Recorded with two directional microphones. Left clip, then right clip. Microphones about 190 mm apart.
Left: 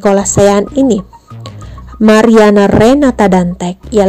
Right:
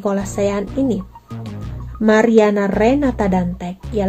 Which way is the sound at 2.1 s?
45° left (ahead or behind).